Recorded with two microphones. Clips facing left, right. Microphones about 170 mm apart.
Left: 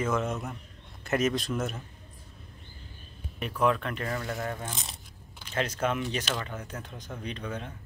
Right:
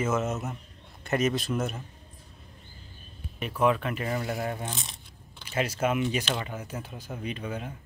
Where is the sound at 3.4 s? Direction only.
5° right (ahead or behind).